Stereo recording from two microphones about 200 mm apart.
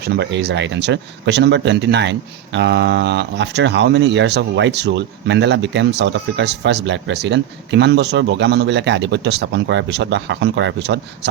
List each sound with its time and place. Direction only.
0.1 s speech: 60° right (ahead or behind)